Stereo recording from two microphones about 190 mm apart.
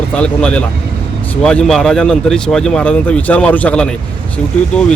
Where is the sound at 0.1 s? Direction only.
5° left (ahead or behind).